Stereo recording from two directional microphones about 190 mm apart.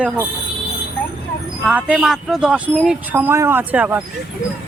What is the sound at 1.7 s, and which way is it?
A man's voice, 5° right (ahead or behind).